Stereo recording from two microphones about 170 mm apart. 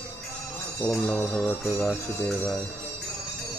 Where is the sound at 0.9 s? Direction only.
5° left (ahead or behind).